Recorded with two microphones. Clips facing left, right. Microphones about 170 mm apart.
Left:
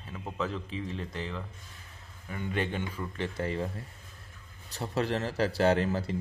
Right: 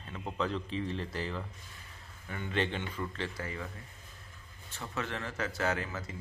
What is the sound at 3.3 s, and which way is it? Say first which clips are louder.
Speech: left 8 dB; 30° left (ahead or behind).